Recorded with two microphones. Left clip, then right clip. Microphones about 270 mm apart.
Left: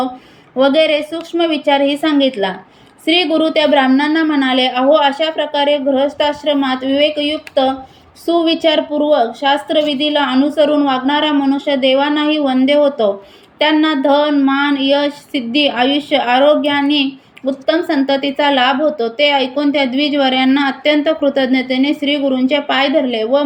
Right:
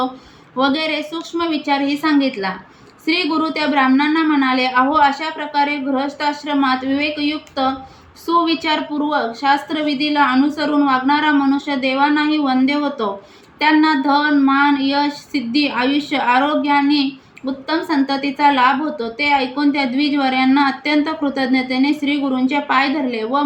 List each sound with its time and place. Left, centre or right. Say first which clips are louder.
0.6 s a woman's voice: left 7 dB; centre
3.1 s a woman's voice: left 5 dB; centre
8.3 s a woman's voice: left 3 dB; centre